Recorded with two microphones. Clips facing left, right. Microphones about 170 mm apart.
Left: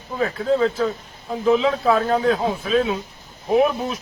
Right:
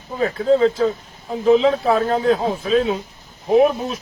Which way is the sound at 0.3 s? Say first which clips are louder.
Right 5 dB; 25° right (ahead or behind).